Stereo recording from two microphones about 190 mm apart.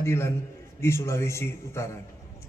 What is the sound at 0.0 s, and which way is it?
A man's voice, 15° left (ahead or behind).